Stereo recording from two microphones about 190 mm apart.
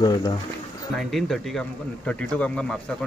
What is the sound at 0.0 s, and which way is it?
Speech, 20° left (ahead or behind).